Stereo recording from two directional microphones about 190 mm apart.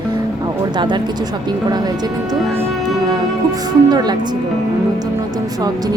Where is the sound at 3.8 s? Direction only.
20° right (ahead or behind).